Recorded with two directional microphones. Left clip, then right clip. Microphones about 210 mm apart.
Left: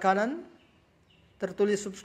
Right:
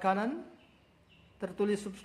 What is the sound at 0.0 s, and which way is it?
Speech, 25° left (ahead or behind).